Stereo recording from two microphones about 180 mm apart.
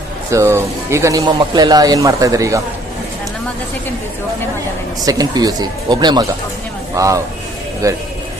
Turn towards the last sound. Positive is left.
turn(degrees=-20)  # may be behind; listen again after turning